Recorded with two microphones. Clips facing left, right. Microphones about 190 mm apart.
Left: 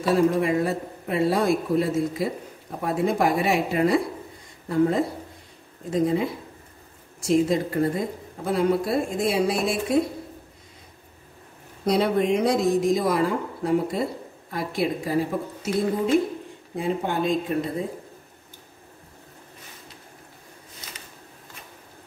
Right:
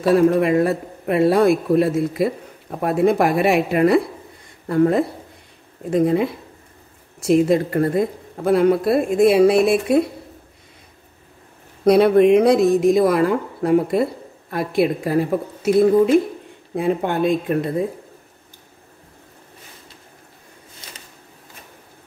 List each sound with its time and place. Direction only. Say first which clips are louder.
0.1 s speech: right 5 dB; 60° right (ahead or behind)
11.8 s speech: right 9 dB; 60° right (ahead or behind)
16.7 s speech: right 5 dB; 60° right (ahead or behind)